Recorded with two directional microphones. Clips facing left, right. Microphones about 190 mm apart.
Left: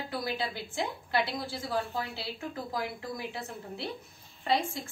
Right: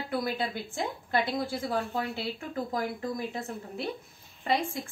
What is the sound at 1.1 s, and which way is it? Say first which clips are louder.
Speech: right 4 dB; 50° right (ahead or behind).